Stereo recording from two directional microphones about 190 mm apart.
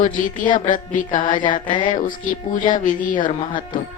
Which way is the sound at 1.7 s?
25° left (ahead or behind).